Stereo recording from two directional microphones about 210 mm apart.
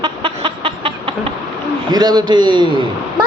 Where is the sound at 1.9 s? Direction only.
20° right (ahead or behind).